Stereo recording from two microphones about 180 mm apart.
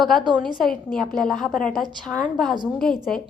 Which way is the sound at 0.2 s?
25° right (ahead or behind).